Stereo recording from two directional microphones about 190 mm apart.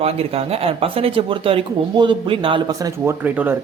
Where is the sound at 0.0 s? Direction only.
30° right (ahead or behind).